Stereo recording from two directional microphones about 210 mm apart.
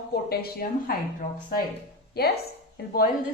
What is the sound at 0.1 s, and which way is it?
Speech, 50° left (ahead or behind).